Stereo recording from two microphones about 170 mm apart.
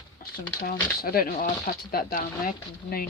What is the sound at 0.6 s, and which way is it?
Speech, 60° left (ahead or behind).